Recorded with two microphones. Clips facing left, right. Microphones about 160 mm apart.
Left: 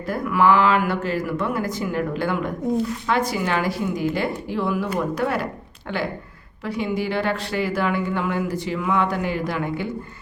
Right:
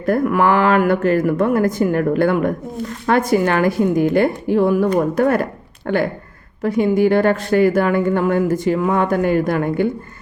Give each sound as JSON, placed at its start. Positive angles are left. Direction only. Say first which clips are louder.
{"t": 0.0, "sound": "speech", "louder": "right 4 dB", "side_deg": -55}